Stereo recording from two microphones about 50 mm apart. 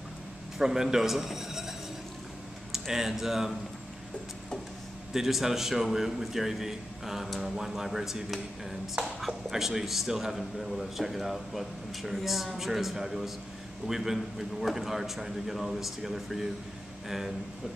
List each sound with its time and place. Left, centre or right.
0.6 s speech: centre
2.7 s speech: centre
5.1 s a man's voice: centre